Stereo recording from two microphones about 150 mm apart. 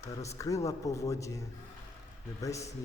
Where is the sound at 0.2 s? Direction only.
20° left (ahead or behind).